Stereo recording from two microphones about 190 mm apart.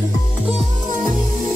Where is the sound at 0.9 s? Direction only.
Centre (ahead or behind).